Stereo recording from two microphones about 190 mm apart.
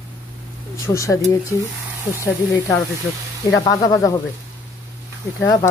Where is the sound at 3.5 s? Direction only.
20° left (ahead or behind).